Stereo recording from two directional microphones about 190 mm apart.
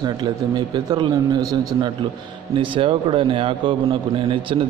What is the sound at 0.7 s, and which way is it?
A man's voice, 20° right (ahead or behind).